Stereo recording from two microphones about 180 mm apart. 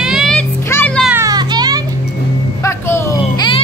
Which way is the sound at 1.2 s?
20° right (ahead or behind).